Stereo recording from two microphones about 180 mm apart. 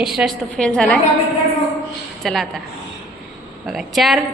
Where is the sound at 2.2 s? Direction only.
Centre (ahead or behind).